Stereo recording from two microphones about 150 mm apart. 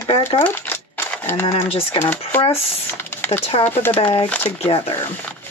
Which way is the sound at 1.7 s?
40° left (ahead or behind).